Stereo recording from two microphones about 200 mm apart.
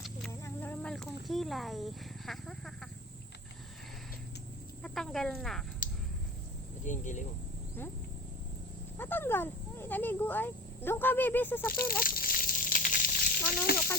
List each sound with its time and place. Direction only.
0.3 s a sound: 10° left (ahead or behind)
1.3 s speech: centre (ahead or behind)
4.8 s speech: centre (ahead or behind)
6.8 s speech: 40° left (ahead or behind)
9.0 s speech: 10° left (ahead or behind)
11.9 s a sound: 45° left (ahead or behind)